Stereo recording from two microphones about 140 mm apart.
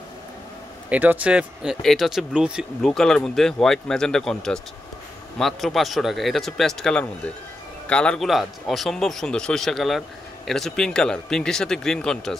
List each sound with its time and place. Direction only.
0.8 s speech: 10° right (ahead or behind); by 12.4 s 5° left (ahead or behind)